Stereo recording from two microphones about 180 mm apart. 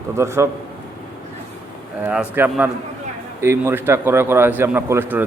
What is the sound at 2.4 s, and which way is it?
A man's voice, 10° right (ahead or behind).